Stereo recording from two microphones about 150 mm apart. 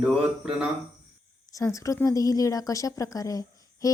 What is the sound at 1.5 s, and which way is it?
Speech, 20° left (ahead or behind).